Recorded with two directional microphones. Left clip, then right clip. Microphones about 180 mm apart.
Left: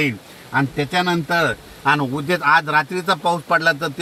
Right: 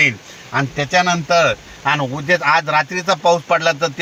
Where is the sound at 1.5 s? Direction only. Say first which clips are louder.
Right 1 dB; 35° right (ahead or behind).